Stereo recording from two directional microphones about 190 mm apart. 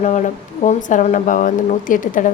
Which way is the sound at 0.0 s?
40° left (ahead or behind).